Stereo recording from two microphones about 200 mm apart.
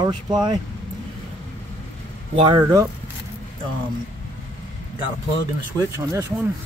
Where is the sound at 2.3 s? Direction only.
25° right (ahead or behind).